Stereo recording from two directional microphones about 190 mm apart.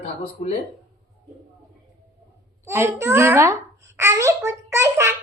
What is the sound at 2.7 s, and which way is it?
A child's voice, 15° right (ahead or behind).